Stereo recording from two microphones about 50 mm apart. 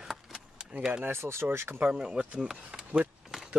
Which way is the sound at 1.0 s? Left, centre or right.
Right.